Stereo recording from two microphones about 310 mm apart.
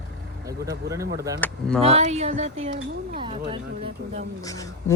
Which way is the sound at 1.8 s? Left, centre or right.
Centre.